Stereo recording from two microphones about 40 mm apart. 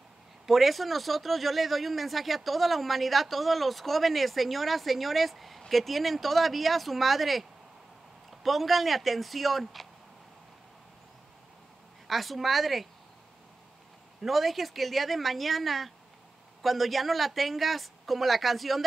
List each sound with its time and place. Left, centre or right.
0.5 s speech: centre
8.5 s speech: centre
12.1 s speech: centre
14.2 s speech: centre